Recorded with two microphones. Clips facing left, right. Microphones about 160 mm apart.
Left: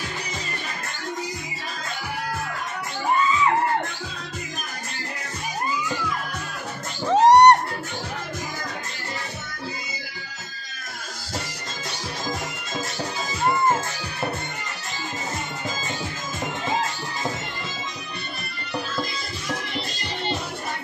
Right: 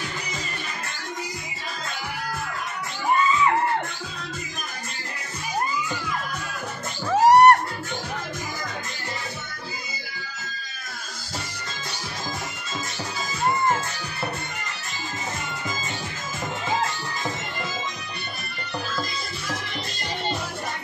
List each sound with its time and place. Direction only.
7.1 s music: 20° left (ahead or behind)